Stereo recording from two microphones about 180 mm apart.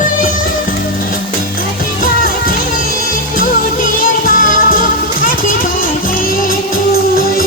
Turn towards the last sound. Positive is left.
turn(degrees=50)  # may be behind; listen again after turning